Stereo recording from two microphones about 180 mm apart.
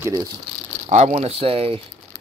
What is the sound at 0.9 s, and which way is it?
Speech, 40° right (ahead or behind).